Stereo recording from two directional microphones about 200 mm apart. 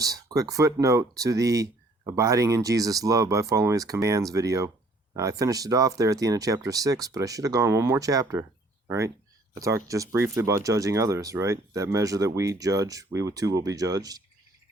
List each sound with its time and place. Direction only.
0.0 s speech: 15° right (ahead or behind)